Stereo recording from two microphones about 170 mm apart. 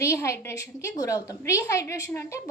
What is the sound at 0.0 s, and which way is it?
A child's voice, 15° left (ahead or behind).